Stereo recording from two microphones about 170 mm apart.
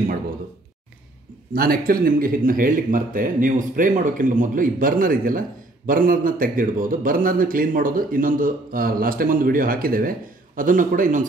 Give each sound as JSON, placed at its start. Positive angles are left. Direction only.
{"t": 1.5, "sound": "a man's voice", "side_deg": -60}